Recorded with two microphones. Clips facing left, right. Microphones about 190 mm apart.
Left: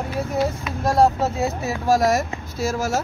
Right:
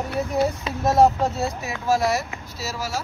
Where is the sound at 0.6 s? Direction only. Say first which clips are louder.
Even; 20° right (ahead or behind).